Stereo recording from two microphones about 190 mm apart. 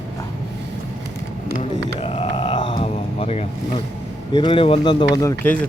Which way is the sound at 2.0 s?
35° left (ahead or behind).